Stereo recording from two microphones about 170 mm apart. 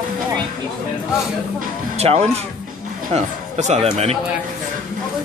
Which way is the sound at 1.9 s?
40° right (ahead or behind).